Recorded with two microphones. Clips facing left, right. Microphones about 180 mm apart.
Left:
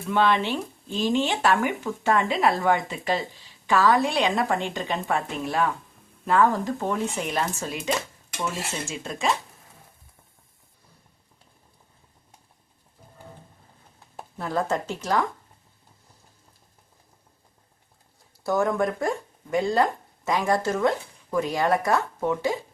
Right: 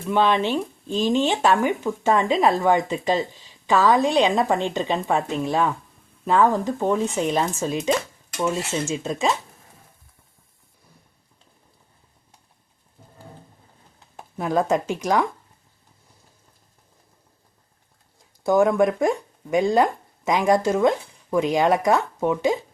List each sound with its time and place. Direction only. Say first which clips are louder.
0.1 s speech: right 3 dB; 20° right (ahead or behind)
14.3 s speech: right 5 dB; 15° right (ahead or behind)
18.4 s speech: right 6 dB; 15° right (ahead or behind)